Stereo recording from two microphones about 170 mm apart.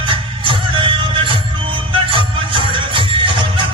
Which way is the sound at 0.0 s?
30° right (ahead or behind).